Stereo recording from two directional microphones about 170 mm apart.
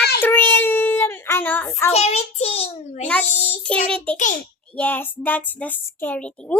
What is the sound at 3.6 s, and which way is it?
A child's voice, 5° left (ahead or behind).